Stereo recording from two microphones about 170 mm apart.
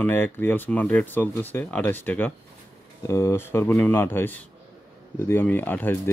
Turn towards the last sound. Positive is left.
turn(degrees=10)  # may be behind; listen again after turning